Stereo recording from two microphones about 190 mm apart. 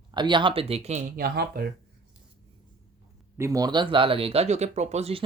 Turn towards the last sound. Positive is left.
turn(degrees=-35)  # may be behind; listen again after turning